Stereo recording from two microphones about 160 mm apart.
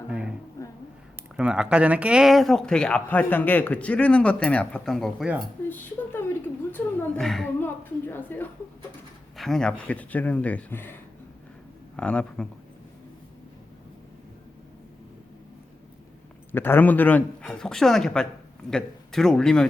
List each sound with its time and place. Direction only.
0.1 s a sound: 5° right (ahead or behind)
1.4 s speech: 5° right (ahead or behind)
5.6 s a sound: 15° left (ahead or behind)
9.4 s speech: 5° left (ahead or behind)
11.9 s speech: 5° left (ahead or behind)
16.5 s speech: 15° left (ahead or behind)